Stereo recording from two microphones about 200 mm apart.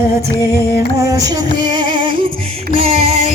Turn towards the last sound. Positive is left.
turn(degrees=-30)  # may be behind; listen again after turning